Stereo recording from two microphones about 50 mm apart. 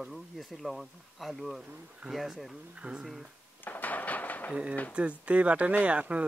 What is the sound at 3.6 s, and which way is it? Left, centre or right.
Dishes, left.